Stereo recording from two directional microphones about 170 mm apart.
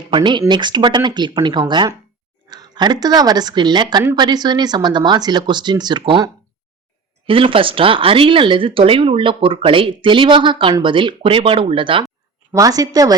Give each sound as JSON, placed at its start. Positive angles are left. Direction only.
{"t": 0.1, "sound": "speech", "side_deg": -30}